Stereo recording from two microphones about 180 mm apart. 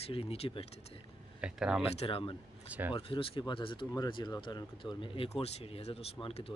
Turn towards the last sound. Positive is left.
turn(degrees=30)  # may be behind; listen again after turning